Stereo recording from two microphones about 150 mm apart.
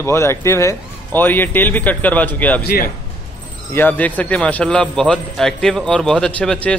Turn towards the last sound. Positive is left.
turn(degrees=10)  # may be behind; listen again after turning